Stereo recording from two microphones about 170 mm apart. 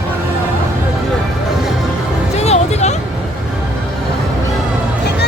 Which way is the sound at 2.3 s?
40° left (ahead or behind).